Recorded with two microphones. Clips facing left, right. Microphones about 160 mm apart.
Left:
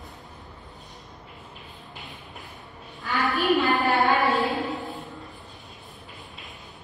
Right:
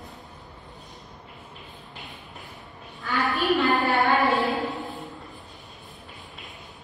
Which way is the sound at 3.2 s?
Centre (ahead or behind).